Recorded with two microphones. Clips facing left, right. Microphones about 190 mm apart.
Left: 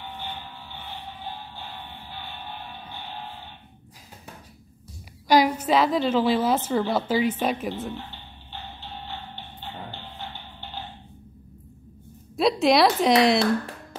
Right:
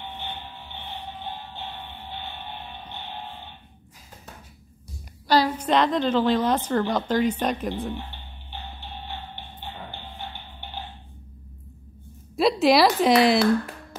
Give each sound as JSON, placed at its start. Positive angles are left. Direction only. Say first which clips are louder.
{"t": 5.3, "sound": "a woman's voice", "louder": "left 1 dB", "side_deg": 10}
{"t": 7.9, "sound": "music", "louder": "right 2 dB", "side_deg": -15}
{"t": 9.8, "sound": "music", "louder": "even", "side_deg": -15}
{"t": 12.4, "sound": "a woman's voice", "louder": "right 1 dB", "side_deg": 0}